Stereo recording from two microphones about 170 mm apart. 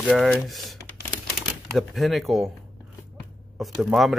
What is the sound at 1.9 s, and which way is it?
Speech, centre (ahead or behind).